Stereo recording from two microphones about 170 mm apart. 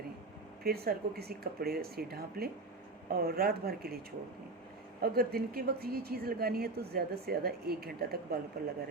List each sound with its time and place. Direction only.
0.6 s speech: 65° right (ahead or behind)